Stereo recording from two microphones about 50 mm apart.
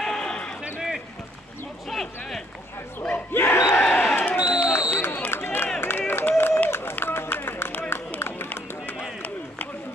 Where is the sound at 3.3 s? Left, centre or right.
Left.